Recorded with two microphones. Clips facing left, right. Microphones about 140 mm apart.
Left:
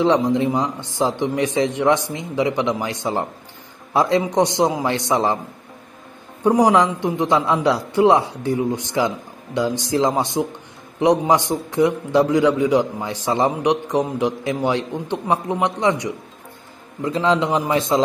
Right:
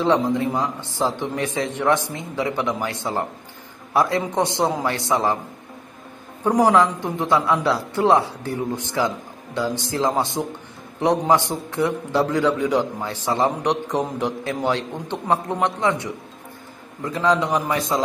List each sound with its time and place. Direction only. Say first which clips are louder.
0.0 s a man's voice: left 3 dB; 15° left (ahead or behind)
6.4 s a man's voice: left 2 dB; 15° left (ahead or behind)